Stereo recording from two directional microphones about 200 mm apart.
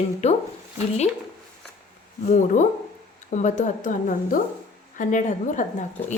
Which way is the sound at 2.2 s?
40° left (ahead or behind).